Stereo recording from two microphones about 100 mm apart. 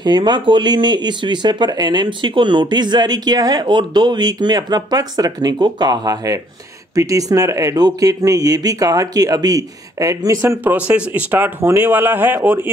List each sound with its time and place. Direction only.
0.0 s speech: 50° right (ahead or behind); by 10.6 s 30° right (ahead or behind)
10.9 s speech: 15° right (ahead or behind)